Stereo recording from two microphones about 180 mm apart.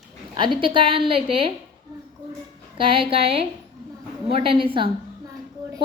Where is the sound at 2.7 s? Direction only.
30° right (ahead or behind).